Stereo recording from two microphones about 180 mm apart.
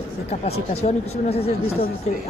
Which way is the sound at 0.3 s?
35° left (ahead or behind).